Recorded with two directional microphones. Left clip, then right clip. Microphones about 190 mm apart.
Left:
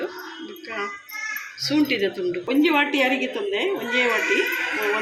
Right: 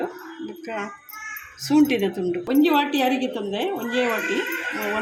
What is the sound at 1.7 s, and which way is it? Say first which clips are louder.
A woman's voice: right 2 dB; 60° right (ahead or behind).